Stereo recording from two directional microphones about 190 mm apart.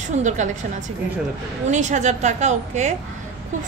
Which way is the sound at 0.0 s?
40° right (ahead or behind).